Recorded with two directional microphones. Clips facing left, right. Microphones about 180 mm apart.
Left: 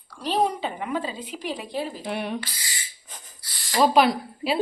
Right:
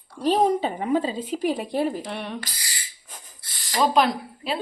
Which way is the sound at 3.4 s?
20° right (ahead or behind).